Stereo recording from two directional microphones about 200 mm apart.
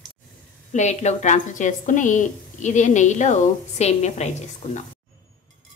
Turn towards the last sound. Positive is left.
turn(degrees=35)  # may be behind; listen again after turning